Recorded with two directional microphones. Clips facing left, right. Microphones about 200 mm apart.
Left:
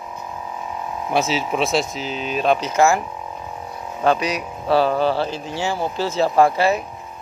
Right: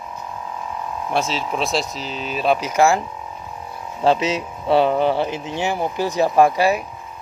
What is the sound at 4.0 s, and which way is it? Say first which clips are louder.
Speech: right 1 dB; 25° right (ahead or behind).